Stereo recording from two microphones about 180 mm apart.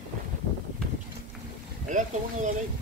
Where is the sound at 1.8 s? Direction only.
45° right (ahead or behind).